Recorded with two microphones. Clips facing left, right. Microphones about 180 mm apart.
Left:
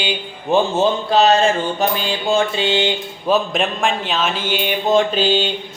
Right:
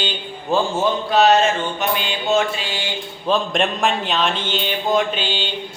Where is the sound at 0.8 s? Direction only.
30° left (ahead or behind).